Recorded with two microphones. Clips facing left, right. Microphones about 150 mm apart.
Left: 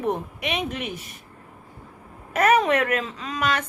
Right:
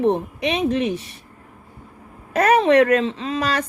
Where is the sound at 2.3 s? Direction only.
35° right (ahead or behind).